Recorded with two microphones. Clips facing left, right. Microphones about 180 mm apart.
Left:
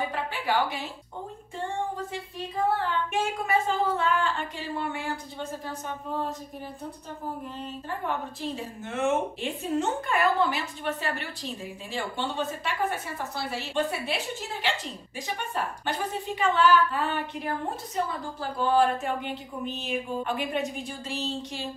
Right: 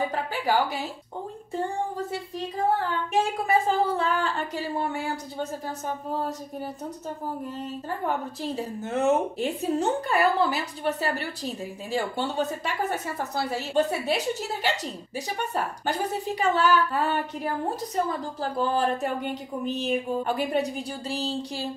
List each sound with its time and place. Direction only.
0.1 s a woman's voice: 40° right (ahead or behind)
3.1 s a woman's voice: 35° right (ahead or behind)
8.4 s a woman's voice: 40° right (ahead or behind)